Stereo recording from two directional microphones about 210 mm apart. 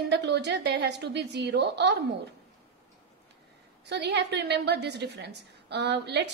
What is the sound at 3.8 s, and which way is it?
A woman's voice, 55° right (ahead or behind).